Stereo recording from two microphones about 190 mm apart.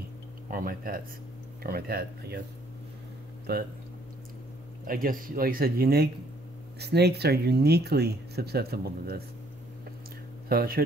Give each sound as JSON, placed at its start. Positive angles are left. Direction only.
{"t": 0.5, "sound": "speech", "side_deg": -50}
{"t": 3.5, "sound": "speech", "side_deg": -55}
{"t": 4.8, "sound": "speech", "side_deg": -50}
{"t": 10.5, "sound": "speech", "side_deg": -55}